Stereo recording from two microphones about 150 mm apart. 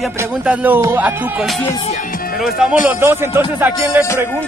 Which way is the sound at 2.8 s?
15° right (ahead or behind).